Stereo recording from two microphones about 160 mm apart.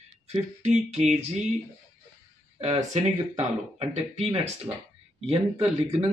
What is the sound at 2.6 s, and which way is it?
Speech, 45° right (ahead or behind).